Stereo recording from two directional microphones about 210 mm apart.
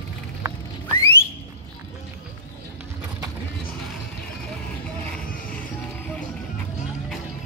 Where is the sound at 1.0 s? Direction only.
10° left (ahead or behind).